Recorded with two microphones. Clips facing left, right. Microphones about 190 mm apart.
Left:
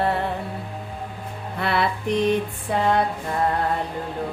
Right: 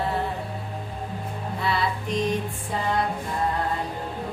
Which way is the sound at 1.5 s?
65° left (ahead or behind).